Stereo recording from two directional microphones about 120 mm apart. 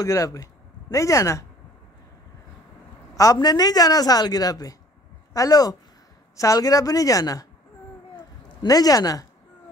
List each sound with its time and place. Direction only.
0.0 s speech: 25° left (ahead or behind)
3.2 s a woman's voice: 30° left (ahead or behind)
8.6 s a woman's voice: 30° left (ahead or behind)